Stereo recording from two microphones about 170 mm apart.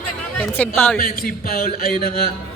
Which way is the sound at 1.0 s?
60° left (ahead or behind).